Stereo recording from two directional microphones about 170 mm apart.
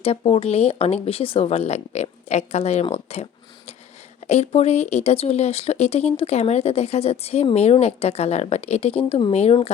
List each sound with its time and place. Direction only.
0.0 s speech: 35° left (ahead or behind)
4.3 s speech: 40° left (ahead or behind)